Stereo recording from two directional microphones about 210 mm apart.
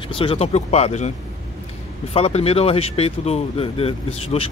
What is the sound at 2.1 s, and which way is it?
Speech, 30° left (ahead or behind).